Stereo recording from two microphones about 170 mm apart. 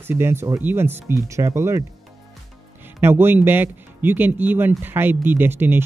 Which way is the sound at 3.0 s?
15° right (ahead or behind).